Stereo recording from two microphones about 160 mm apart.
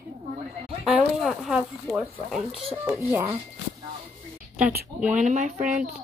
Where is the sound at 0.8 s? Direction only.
Centre (ahead or behind).